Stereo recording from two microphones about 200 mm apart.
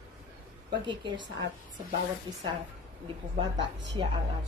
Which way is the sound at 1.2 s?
60° right (ahead or behind).